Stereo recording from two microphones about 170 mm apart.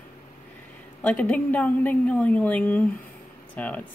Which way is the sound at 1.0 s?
10° left (ahead or behind).